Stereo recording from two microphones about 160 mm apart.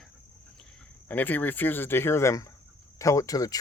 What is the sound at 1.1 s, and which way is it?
Speech, 10° left (ahead or behind).